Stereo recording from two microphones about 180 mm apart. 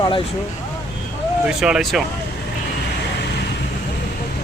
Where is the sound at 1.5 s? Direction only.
Centre (ahead or behind).